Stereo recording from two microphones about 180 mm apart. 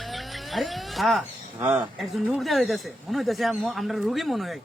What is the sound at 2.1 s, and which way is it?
Speech, centre (ahead or behind).